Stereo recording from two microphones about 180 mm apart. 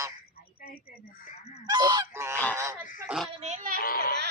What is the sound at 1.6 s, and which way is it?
Goose, 25° right (ahead or behind).